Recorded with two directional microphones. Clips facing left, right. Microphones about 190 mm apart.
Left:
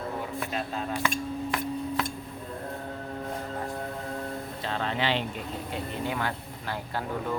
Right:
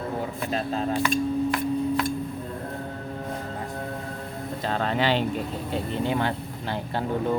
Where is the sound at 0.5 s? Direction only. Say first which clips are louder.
Right 8 dB; 35° right (ahead or behind).